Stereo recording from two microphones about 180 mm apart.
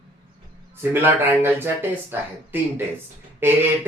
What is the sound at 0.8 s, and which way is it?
Speech, 10° right (ahead or behind).